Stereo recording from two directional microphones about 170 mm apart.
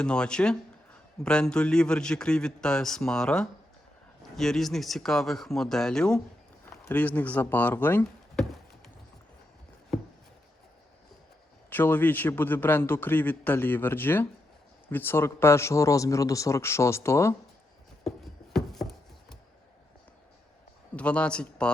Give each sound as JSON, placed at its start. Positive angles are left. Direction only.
{"t": 0.0, "sound": "a man's voice", "side_deg": 5}
{"t": 9.9, "sound": "chopping", "side_deg": 0}
{"t": 11.7, "sound": "a man's voice", "side_deg": 10}
{"t": 18.5, "sound": "chopping", "side_deg": 0}
{"t": 20.9, "sound": "a man's voice", "side_deg": 5}